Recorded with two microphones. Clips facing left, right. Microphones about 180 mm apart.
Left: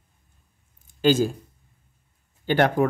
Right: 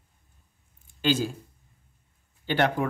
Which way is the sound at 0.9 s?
45° left (ahead or behind).